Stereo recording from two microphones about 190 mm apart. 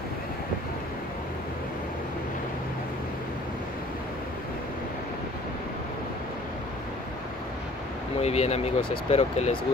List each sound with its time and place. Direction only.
8.2 s speech: 35° left (ahead or behind)